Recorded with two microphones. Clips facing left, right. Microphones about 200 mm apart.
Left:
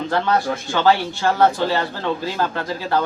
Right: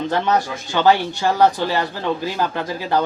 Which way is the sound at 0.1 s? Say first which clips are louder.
Left 2 dB; 20° right (ahead or behind).